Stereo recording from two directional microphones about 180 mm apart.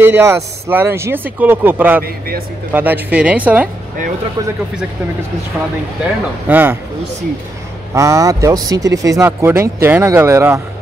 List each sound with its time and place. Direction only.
0.0 s speech: 15° right (ahead or behind)
2.0 s speech: 55° right (ahead or behind)
2.7 s speech: 10° right (ahead or behind)
6.0 s speech: 10° right (ahead or behind)
7.9 s speech: 15° right (ahead or behind)